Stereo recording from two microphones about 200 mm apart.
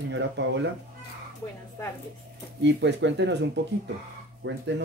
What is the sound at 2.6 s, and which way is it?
Speech, 60° right (ahead or behind).